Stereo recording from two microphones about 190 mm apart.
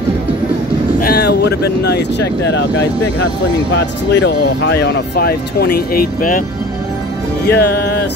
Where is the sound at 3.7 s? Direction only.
65° left (ahead or behind); by 6.4 s 45° left (ahead or behind).